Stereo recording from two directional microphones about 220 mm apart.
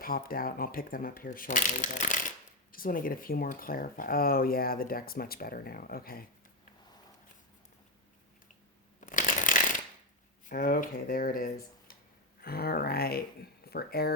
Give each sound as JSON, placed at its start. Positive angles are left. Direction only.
{"t": 0.0, "sound": "speech", "side_deg": 40}
{"t": 9.0, "sound": "shuffling cards", "side_deg": 35}
{"t": 10.5, "sound": "speech", "side_deg": 40}